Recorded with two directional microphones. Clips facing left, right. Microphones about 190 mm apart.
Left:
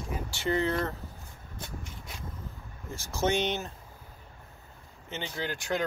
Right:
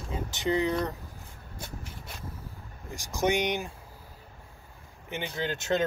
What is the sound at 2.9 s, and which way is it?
Speech, 15° right (ahead or behind).